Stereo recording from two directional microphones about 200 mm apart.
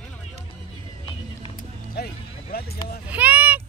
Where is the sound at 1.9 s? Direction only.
50° left (ahead or behind).